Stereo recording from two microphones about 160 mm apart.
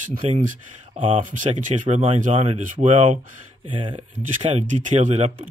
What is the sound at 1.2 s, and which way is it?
Speech, 50° right (ahead or behind).